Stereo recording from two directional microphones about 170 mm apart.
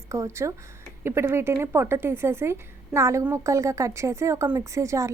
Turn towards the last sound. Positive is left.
turn(degrees=-20)  # may be behind; listen again after turning